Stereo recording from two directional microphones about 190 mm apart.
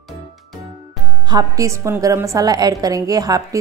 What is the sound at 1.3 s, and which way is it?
A woman's voice, 15° right (ahead or behind).